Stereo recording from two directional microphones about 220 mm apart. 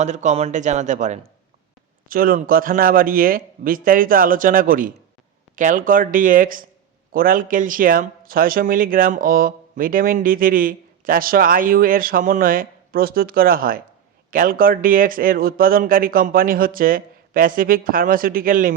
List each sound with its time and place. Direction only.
0.0 s speech: 30° right (ahead or behind)